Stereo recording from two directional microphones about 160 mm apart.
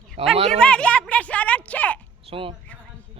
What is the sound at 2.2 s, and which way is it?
Speech, 35° right (ahead or behind).